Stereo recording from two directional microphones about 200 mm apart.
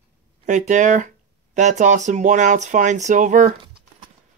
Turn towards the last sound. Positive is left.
turn(degrees=-40)  # may be behind; listen again after turning